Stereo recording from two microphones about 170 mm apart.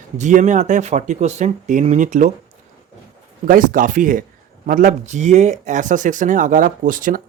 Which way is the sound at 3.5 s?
50° right (ahead or behind).